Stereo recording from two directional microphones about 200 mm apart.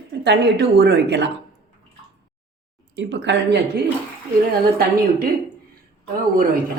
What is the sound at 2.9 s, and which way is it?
Speech, 65° right (ahead or behind).